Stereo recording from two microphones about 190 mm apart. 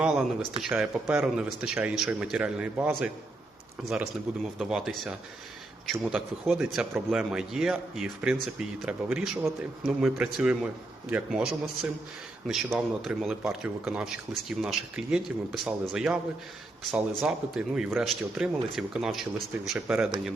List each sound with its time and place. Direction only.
0.0 s a man's voice: centre (ahead or behind)